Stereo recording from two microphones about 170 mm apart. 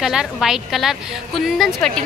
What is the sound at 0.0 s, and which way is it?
A woman's voice, 5° right (ahead or behind).